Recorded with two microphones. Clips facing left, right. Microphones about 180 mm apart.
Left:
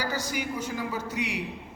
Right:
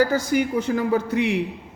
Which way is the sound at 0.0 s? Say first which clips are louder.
Right 11 dB; 55° right (ahead or behind).